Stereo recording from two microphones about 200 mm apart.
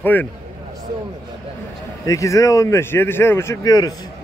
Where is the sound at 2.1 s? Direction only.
15° left (ahead or behind).